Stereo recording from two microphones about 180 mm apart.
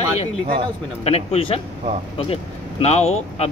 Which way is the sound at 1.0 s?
35° left (ahead or behind).